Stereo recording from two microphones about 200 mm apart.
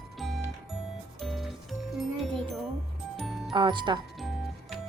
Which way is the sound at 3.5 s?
25° right (ahead or behind).